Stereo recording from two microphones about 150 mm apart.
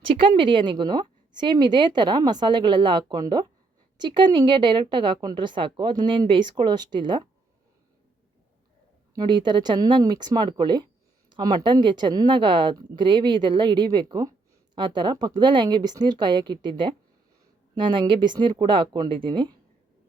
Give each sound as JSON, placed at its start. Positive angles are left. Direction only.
{"t": 0.1, "sound": "a woman's voice", "side_deg": -35}
{"t": 9.1, "sound": "a woman's voice", "side_deg": -30}